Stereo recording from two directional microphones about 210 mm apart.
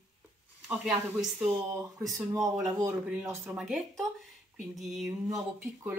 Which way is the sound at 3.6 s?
Centre (ahead or behind).